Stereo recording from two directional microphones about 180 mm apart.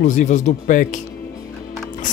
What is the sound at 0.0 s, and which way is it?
Speech, 45° left (ahead or behind).